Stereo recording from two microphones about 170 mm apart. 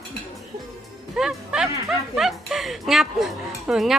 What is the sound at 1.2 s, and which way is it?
Music, 5° right (ahead or behind).